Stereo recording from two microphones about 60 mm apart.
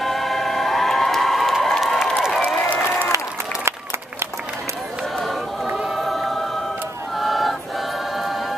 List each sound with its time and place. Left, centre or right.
0.0 s music: centre
2.4 s applause: left
5.7 s choir: centre
5.9 s choir: centre